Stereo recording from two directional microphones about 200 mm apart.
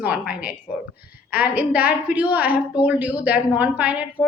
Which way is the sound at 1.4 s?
10° right (ahead or behind).